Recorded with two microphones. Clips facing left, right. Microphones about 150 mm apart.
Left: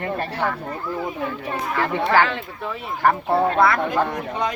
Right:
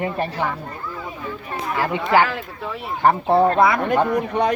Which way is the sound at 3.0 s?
20° right (ahead or behind).